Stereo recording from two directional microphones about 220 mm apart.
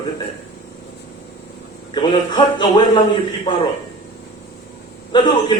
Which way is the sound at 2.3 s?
20° left (ahead or behind).